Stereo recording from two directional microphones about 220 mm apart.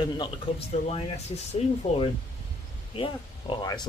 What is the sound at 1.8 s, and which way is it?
Speech, 30° left (ahead or behind).